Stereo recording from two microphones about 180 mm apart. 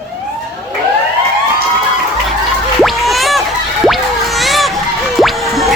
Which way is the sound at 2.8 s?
Centre (ahead or behind).